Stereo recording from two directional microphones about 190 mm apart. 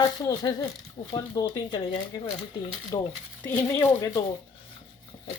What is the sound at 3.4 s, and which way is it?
Speech, 10° left (ahead or behind).